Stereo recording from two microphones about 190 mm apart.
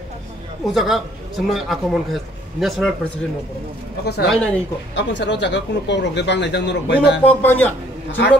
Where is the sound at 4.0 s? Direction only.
55° left (ahead or behind).